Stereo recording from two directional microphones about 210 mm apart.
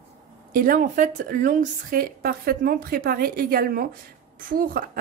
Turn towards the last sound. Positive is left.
turn(degrees=-45)  # may be behind; listen again after turning